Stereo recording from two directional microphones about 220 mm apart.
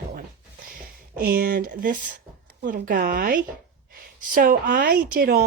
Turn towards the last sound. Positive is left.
turn(degrees=-45)  # may be behind; listen again after turning